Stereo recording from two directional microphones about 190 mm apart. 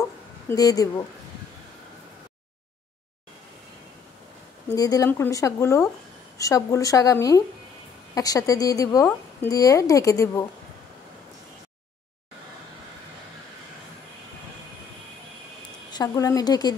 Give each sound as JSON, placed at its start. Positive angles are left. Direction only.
{"t": 0.5, "sound": "a woman's voice", "side_deg": 20}
{"t": 4.6, "sound": "a woman's voice", "side_deg": 20}
{"t": 15.9, "sound": "a woman's voice", "side_deg": 20}